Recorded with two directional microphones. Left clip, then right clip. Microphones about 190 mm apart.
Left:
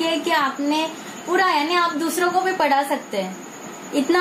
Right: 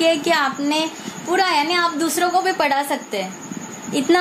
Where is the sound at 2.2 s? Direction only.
45° right (ahead or behind).